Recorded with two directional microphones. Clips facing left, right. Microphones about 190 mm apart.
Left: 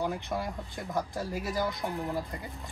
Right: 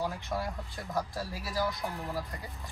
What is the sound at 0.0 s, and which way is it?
Speech, 20° left (ahead or behind).